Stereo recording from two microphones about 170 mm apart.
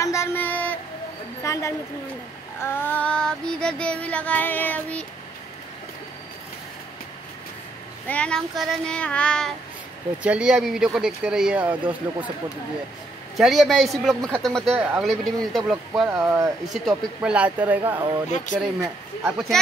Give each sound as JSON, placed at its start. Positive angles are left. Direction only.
{"t": 0.0, "sound": "a sound", "side_deg": 15}
{"t": 2.6, "sound": "child singing", "side_deg": 10}
{"t": 8.1, "sound": "speech", "side_deg": 5}
{"t": 10.2, "sound": "speech", "side_deg": -5}
{"t": 13.4, "sound": "speech", "side_deg": 0}
{"t": 16.1, "sound": "speech", "side_deg": -15}
{"t": 16.6, "sound": "speech", "side_deg": -5}
{"t": 18.3, "sound": "speech", "side_deg": 50}
{"t": 19.2, "sound": "speech", "side_deg": 0}